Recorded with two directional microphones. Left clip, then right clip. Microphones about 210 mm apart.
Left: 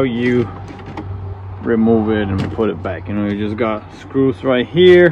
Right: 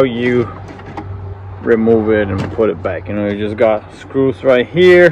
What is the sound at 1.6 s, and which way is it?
Speech, 5° left (ahead or behind).